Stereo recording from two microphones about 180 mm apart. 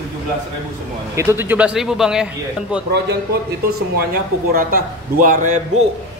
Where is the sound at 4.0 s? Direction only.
55° right (ahead or behind).